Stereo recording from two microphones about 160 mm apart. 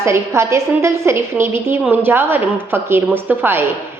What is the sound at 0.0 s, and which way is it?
A woman's voice, 15° right (ahead or behind).